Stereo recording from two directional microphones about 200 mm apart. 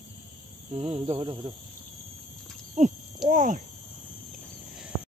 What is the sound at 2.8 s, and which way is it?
Speech, 40° right (ahead or behind).